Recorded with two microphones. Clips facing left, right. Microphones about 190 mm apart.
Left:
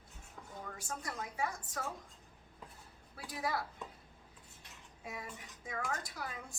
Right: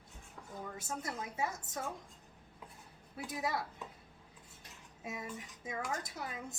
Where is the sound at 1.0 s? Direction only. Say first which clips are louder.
Even; 25° right (ahead or behind).